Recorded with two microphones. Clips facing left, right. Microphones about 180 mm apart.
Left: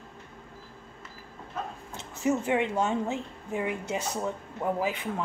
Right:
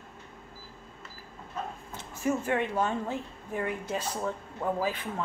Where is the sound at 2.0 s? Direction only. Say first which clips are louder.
Left 2 dB; 20° left (ahead or behind).